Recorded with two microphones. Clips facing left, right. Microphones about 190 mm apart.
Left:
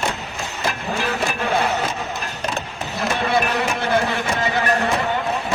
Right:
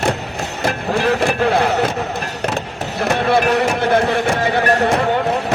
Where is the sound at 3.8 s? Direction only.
60° right (ahead or behind).